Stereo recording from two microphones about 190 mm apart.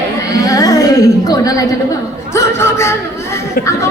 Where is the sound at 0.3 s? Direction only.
20° left (ahead or behind).